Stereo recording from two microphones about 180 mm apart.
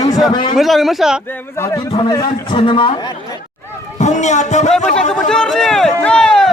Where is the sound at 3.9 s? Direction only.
40° left (ahead or behind).